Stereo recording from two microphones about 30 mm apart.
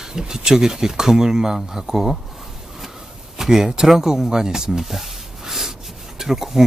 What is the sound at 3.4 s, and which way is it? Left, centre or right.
Speech, centre.